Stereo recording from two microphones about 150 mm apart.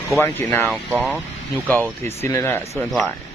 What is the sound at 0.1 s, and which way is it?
Speech, 15° left (ahead or behind).